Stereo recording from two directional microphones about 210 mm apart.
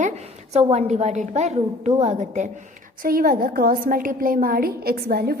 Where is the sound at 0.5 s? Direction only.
30° right (ahead or behind).